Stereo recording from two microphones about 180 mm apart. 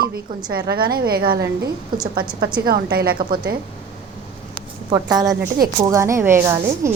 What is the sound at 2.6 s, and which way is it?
Speech, 55° right (ahead or behind).